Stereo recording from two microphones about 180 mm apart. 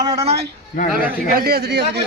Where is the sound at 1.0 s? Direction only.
55° right (ahead or behind).